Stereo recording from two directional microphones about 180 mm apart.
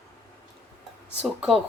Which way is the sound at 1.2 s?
Centre (ahead or behind).